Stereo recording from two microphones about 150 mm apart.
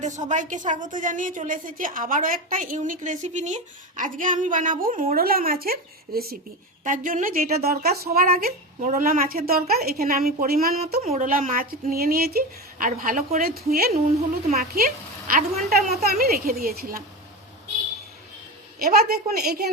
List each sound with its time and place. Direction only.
0.0 s a woman's voice: 55° right (ahead or behind); by 6.3 s 85° right
6.8 s a woman's voice: 60° right (ahead or behind); by 10.8 s 80° right
11.0 s a woman's voice: 45° right (ahead or behind)
11.3 s a woman's voice: 65° right (ahead or behind); by 13.9 s 90° right
14.4 s a woman's voice: 60° right (ahead or behind)
16.0 s speech: 90° right
18.8 s a woman's voice: 85° right